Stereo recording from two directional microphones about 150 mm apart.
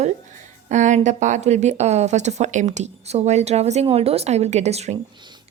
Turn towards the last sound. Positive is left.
turn(degrees=-50)  # may be behind; listen again after turning